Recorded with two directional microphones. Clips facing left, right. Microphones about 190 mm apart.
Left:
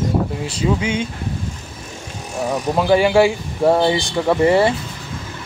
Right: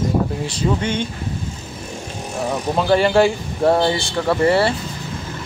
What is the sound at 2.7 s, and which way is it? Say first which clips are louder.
Speech: left 1 dB; 10° left (ahead or behind).